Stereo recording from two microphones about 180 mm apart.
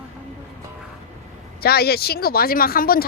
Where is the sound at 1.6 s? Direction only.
60° left (ahead or behind).